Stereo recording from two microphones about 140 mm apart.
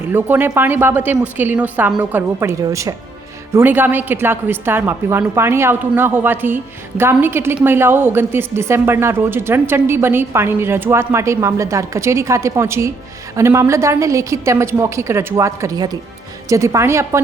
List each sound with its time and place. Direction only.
0.1 s a woman's voice: 15° right (ahead or behind)